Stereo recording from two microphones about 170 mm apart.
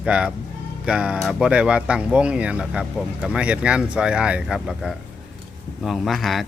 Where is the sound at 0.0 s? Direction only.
5° right (ahead or behind).